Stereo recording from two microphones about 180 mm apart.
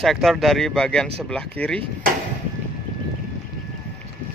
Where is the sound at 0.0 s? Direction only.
Centre (ahead or behind).